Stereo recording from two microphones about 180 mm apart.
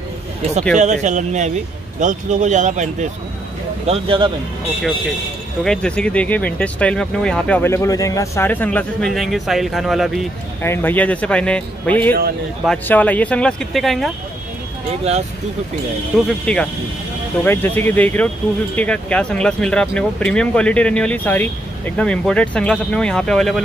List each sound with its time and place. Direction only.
0.7 s speech: 40° right (ahead or behind)
3.8 s speech: 30° right (ahead or behind)
5.6 s speech: 5° left (ahead or behind)
10.6 s speech: 10° left (ahead or behind)
16.3 s speech: 5° left (ahead or behind)